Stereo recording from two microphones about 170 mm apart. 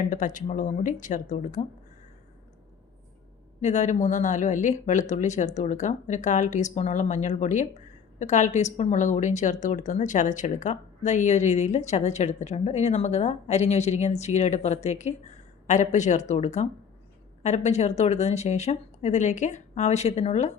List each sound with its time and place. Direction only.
0.1 s a woman's voice: 50° left (ahead or behind)
3.6 s a woman's voice: 45° left (ahead or behind)